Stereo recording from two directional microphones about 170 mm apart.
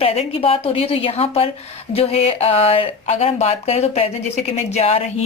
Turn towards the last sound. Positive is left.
turn(degrees=40)  # may be behind; listen again after turning